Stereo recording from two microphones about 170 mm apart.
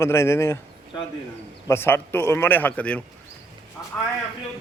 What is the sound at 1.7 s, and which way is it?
A man's voice, 15° left (ahead or behind).